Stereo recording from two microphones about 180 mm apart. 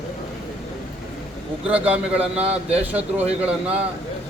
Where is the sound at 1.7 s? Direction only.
5° right (ahead or behind).